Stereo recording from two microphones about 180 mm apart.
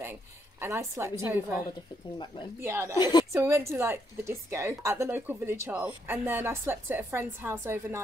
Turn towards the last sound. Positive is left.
turn(degrees=-15)  # may be behind; listen again after turning